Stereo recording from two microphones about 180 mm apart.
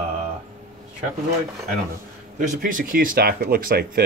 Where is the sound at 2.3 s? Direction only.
45° right (ahead or behind).